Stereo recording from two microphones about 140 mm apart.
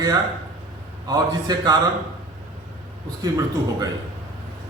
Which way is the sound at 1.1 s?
30° right (ahead or behind).